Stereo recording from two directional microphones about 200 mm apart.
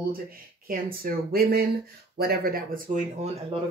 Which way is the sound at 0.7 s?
45° right (ahead or behind).